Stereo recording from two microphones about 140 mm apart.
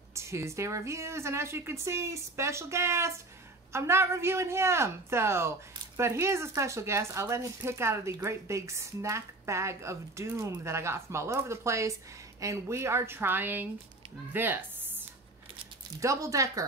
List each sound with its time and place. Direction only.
0.1 s a woman's voice: 20° right (ahead or behind)